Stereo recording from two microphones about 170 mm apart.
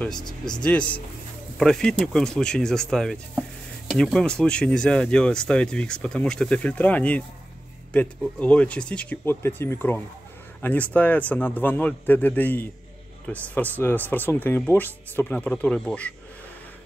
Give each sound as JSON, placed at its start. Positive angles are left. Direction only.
{"t": 0.2, "sound": "speech", "side_deg": 25}
{"t": 0.7, "sound": "speech", "side_deg": 5}